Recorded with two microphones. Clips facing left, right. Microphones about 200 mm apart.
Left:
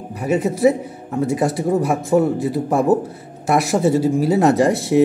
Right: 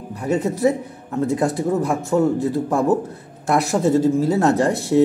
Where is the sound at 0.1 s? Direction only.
10° left (ahead or behind).